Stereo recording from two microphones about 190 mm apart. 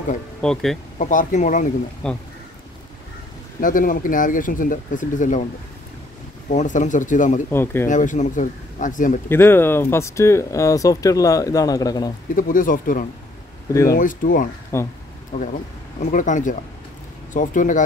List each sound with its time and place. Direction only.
0.4 s speech: 5° left (ahead or behind)
0.9 s speech: 40° left (ahead or behind)
2.0 s speech: 5° left (ahead or behind)
3.6 s speech: 45° left (ahead or behind)
6.5 s speech: 40° left (ahead or behind)
7.5 s speech: 10° left (ahead or behind)
7.9 s speech: 40° left (ahead or behind)
9.3 s speech: 10° left (ahead or behind)
12.4 s speech: 45° left (ahead or behind)
14.7 s speech: 15° left (ahead or behind)
16.0 s speech: 40° left (ahead or behind)